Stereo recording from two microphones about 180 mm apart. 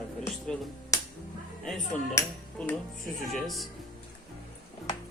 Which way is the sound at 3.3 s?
Centre (ahead or behind).